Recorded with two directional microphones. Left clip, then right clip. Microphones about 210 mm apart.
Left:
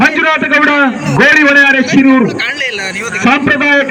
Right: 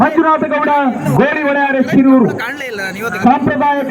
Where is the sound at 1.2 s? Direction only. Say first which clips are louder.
Left 8 dB; 40° right (ahead or behind).